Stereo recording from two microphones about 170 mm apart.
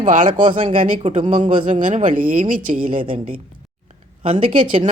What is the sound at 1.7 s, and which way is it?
Speech, 45° right (ahead or behind).